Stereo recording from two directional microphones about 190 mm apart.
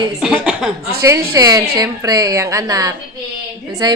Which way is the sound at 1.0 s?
15° right (ahead or behind).